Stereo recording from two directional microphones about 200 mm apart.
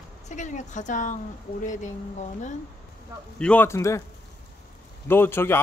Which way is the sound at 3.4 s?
10° left (ahead or behind).